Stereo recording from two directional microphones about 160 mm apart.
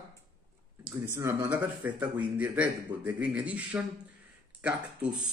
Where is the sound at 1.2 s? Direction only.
15° right (ahead or behind).